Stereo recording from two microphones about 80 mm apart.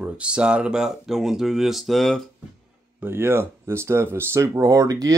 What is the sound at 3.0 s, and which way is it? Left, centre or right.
Speech, right.